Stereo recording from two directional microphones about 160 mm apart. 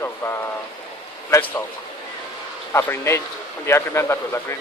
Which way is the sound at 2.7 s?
15° left (ahead or behind).